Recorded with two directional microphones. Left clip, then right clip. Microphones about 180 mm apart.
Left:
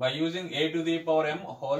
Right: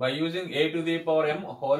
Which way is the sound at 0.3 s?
20° right (ahead or behind).